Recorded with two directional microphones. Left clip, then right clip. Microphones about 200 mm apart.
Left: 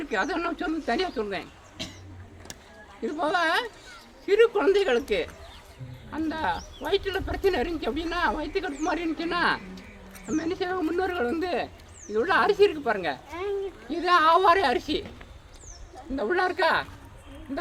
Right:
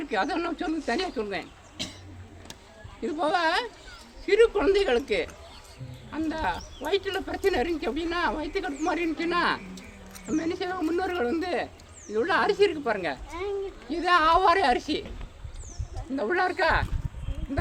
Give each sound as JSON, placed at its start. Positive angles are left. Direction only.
{"t": 0.0, "sound": "speech", "side_deg": 0}
{"t": 1.8, "sound": "a sound", "side_deg": -55}
{"t": 3.0, "sound": "speech", "side_deg": 0}
{"t": 16.1, "sound": "speech", "side_deg": 5}